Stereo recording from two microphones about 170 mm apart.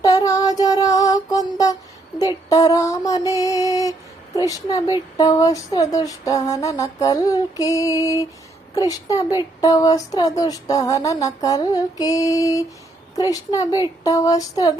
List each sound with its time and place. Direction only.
0.0 s music: 20° left (ahead or behind)
2.1 s a sound: 20° left (ahead or behind)
4.4 s speech: 20° left (ahead or behind)